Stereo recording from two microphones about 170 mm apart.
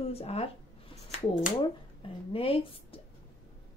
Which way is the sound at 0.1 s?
35° left (ahead or behind).